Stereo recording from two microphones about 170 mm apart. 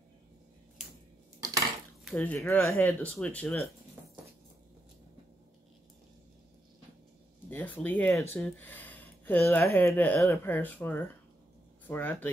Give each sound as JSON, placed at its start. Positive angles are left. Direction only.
{"t": 2.0, "sound": "speech", "side_deg": 5}
{"t": 7.4, "sound": "speech", "side_deg": 10}